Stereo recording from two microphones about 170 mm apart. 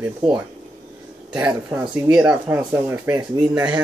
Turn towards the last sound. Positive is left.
turn(degrees=-10)  # may be behind; listen again after turning